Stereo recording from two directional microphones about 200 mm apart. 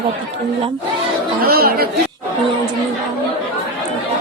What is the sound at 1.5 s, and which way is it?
Speech, 50° right (ahead or behind).